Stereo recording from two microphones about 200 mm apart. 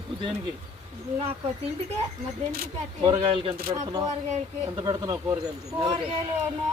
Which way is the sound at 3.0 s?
25° right (ahead or behind).